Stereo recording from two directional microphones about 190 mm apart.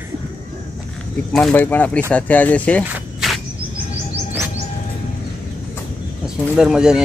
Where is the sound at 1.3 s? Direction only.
5° left (ahead or behind).